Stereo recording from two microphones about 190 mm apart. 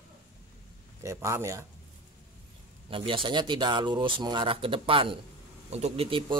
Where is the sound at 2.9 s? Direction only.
25° right (ahead or behind).